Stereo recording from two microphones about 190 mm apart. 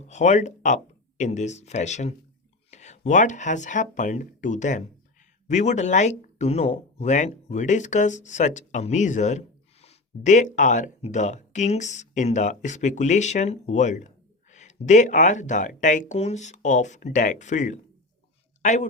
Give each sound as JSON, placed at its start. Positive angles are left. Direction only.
{"t": 0.0, "sound": "speech", "side_deg": 40}